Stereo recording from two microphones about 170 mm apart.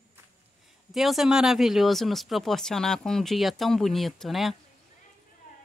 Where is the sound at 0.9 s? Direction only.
Centre (ahead or behind).